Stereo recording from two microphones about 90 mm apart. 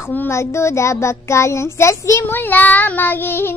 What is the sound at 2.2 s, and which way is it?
Child singing, 20° left (ahead or behind).